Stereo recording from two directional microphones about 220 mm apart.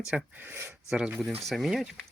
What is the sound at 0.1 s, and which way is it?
Speech, 5° right (ahead or behind).